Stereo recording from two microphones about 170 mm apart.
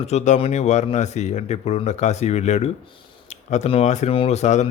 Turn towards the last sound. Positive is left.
turn(degrees=40)  # may be behind; listen again after turning